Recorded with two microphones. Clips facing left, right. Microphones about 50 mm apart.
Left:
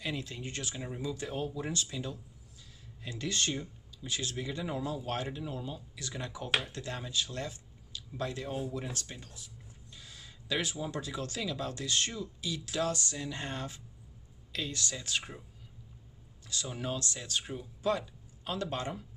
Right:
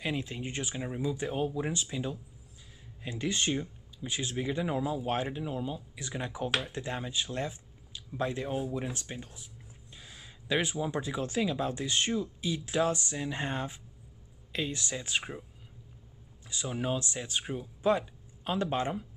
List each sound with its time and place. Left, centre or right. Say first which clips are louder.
0.0 s speech: right 4 dB; right
8.5 s speech: right 3 dB; centre
8.9 s speech: right 3 dB; right
16.4 s speech: right 4 dB; right